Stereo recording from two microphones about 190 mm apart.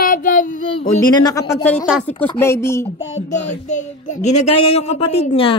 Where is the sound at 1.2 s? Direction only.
20° left (ahead or behind).